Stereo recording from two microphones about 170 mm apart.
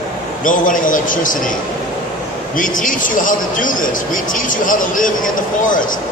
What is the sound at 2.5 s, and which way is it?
A man's voice, 50° left (ahead or behind).